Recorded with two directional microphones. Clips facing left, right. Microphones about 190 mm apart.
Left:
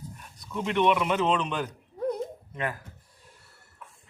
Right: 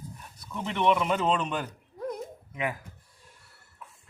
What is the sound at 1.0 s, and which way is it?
Speech, centre (ahead or behind).